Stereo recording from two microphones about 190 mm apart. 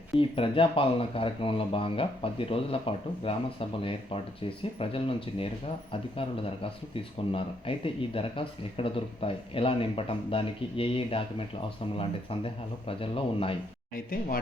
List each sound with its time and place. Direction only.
0.2 s speech: 30° left (ahead or behind)
13.9 s speech: 50° left (ahead or behind)